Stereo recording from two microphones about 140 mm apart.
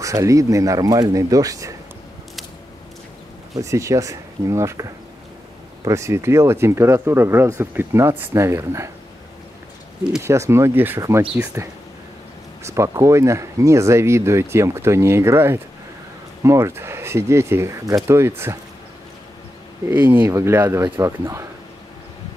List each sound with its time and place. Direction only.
0.0 s speech: 25° right (ahead or behind)
3.5 s speech: 20° right (ahead or behind)
5.9 s speech: 20° right (ahead or behind)
10.2 s speech: 20° right (ahead or behind)
19.9 s speech: 15° right (ahead or behind)